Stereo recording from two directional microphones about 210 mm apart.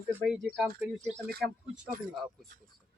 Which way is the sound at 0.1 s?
10° right (ahead or behind).